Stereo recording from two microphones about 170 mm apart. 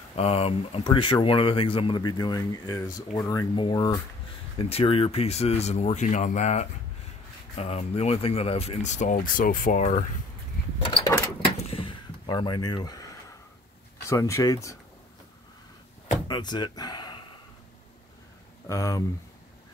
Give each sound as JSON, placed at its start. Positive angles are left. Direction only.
{"t": 0.1, "sound": "speech", "side_deg": 35}
{"t": 10.8, "sound": "a sound", "side_deg": 30}
{"t": 14.0, "sound": "speech", "side_deg": 20}
{"t": 16.3, "sound": "speech", "side_deg": 25}
{"t": 18.7, "sound": "speech", "side_deg": 20}